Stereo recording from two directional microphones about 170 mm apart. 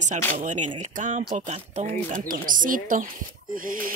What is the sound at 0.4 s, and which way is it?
Speech, 45° right (ahead or behind).